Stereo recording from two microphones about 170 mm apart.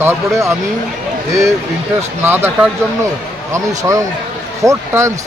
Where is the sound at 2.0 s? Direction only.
10° right (ahead or behind).